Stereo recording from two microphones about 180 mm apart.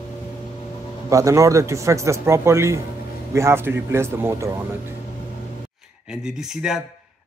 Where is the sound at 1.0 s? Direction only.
15° right (ahead or behind).